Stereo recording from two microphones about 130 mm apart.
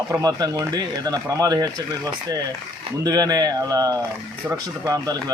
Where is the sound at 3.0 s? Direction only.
30° right (ahead or behind).